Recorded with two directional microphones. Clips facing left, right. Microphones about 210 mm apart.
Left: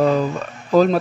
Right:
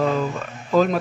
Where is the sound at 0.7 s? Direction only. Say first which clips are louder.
Left 4 dB; 40° left (ahead or behind).